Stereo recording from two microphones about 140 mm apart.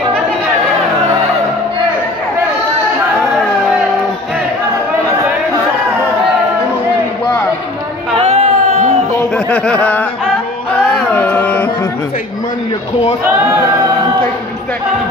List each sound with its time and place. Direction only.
8.2 s a sound: 50° right (ahead or behind)
9.5 s speech: 10° left (ahead or behind)
10.9 s carnatic music: 10° left (ahead or behind)